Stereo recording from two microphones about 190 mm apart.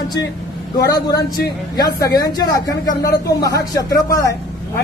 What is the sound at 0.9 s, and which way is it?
Speech, 20° left (ahead or behind).